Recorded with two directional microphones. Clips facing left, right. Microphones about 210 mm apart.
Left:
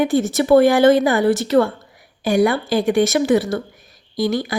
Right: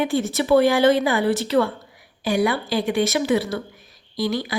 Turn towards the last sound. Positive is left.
turn(degrees=45)  # may be behind; listen again after turning